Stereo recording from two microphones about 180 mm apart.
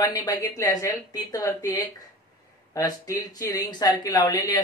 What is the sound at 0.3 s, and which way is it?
Speech, 20° left (ahead or behind).